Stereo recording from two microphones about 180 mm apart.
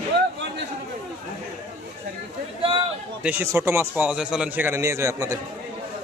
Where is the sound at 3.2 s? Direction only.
10° right (ahead or behind).